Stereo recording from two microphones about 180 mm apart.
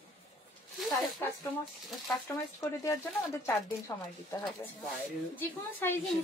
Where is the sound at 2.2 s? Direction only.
15° left (ahead or behind).